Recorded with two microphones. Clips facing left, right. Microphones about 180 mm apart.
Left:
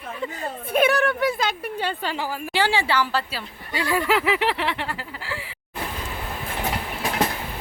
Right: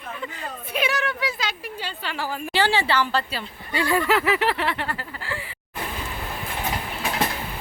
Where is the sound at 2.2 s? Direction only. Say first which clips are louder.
Right 2 dB; 15° left (ahead or behind).